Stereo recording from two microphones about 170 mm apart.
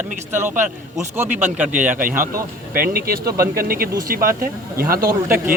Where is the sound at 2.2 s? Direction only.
55° right (ahead or behind).